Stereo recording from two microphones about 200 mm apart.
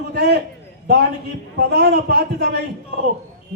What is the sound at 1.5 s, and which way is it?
A man's voice, 55° right (ahead or behind).